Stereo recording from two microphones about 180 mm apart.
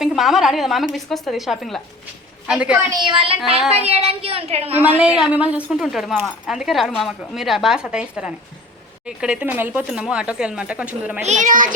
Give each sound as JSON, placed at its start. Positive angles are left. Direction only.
{"t": 0.0, "sound": "a woman's voice", "side_deg": 0}
{"t": 2.9, "sound": "a woman's voice", "side_deg": -25}
{"t": 5.2, "sound": "a woman's voice", "side_deg": -5}
{"t": 11.3, "sound": "a child's voice", "side_deg": -45}